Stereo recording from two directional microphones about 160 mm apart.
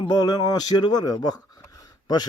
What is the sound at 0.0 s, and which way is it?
A man's voice, 25° left (ahead or behind).